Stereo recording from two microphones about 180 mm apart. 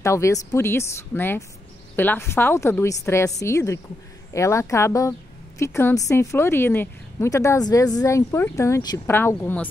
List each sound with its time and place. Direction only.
0.0 s a woman's voice: 15° left (ahead or behind)